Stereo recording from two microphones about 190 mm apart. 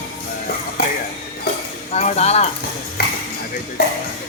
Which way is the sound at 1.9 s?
35° left (ahead or behind).